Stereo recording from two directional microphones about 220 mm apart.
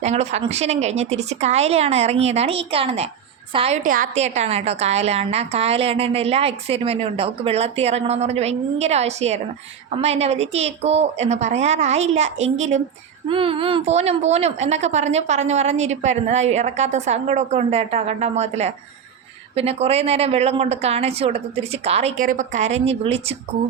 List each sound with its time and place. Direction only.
0.0 s a woman's voice: 30° right (ahead or behind)
3.8 s a woman's voice: 40° right (ahead or behind)